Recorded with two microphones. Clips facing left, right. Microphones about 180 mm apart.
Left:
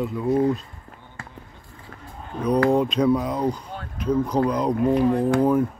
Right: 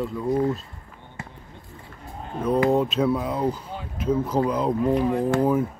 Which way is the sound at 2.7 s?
5° right (ahead or behind).